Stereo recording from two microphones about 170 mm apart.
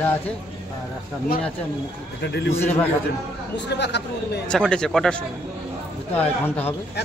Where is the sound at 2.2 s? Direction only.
85° left.